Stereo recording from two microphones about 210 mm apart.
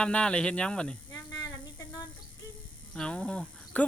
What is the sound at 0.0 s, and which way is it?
Speech, 5° left (ahead or behind).